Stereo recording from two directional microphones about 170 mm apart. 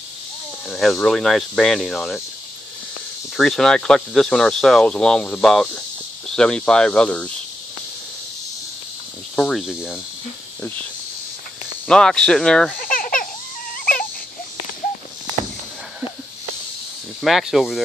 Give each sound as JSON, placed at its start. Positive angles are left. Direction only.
{"t": 0.7, "sound": "speech", "side_deg": 0}
{"t": 3.3, "sound": "speech", "side_deg": 0}
{"t": 9.3, "sound": "speech", "side_deg": 5}
{"t": 11.9, "sound": "speech", "side_deg": 5}
{"t": 12.8, "sound": "crying", "side_deg": 55}
{"t": 13.7, "sound": "a sound", "side_deg": 55}
{"t": 17.2, "sound": "speech", "side_deg": 0}